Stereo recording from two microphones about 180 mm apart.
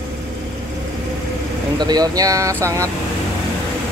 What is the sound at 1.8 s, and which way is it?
Speech, 20° right (ahead or behind).